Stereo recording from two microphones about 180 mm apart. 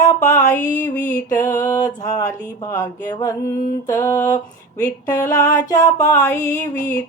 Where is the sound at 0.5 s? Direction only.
10° left (ahead or behind).